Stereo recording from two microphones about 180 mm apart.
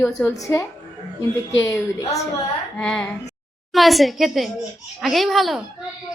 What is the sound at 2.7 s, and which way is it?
A woman's voice, 5° left (ahead or behind).